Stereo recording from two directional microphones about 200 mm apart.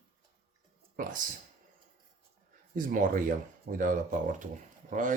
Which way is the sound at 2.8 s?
45° right (ahead or behind).